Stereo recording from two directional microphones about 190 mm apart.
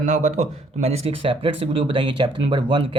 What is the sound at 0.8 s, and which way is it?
Speech, 30° right (ahead or behind).